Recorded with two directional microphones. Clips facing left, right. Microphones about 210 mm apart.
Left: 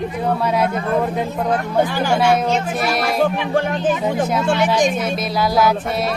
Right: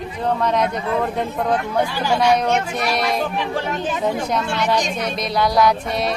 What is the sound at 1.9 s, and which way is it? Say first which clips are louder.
Speech: left 2 dB; 50° left (ahead or behind).